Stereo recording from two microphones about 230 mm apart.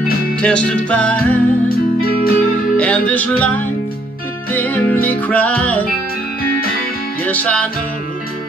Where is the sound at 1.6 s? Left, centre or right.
Left.